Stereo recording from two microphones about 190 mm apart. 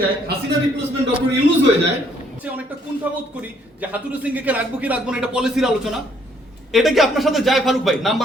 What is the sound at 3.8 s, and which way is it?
A man's voice, 10° right (ahead or behind).